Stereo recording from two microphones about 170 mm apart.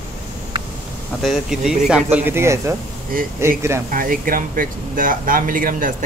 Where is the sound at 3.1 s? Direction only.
55° right (ahead or behind).